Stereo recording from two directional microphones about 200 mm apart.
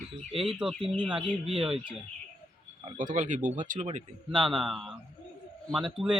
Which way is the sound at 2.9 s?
40° right (ahead or behind).